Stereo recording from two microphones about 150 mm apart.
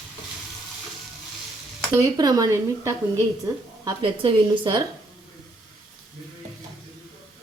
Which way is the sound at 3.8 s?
35° right (ahead or behind).